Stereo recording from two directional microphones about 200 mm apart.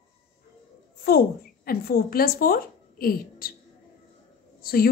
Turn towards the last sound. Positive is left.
turn(degrees=50)  # may be behind; listen again after turning